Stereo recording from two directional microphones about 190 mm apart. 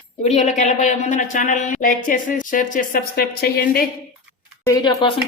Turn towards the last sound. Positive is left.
turn(degrees=20)  # may be behind; listen again after turning